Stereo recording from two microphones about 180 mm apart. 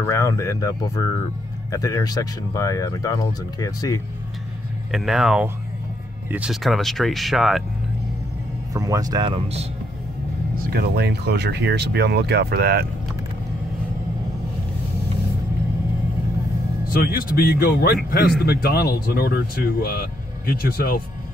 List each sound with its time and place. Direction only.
0.0 s speech: 15° left (ahead or behind)
4.9 s speech: centre (ahead or behind)
8.7 s speech: 20° right (ahead or behind); by 9.7 s 35° right (ahead or behind)
10.6 s speech: 60° right (ahead or behind)
16.9 s speech: 55° left (ahead or behind)